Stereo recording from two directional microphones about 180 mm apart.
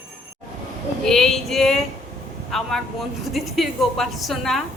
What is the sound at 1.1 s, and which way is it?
A woman's voice, centre (ahead or behind).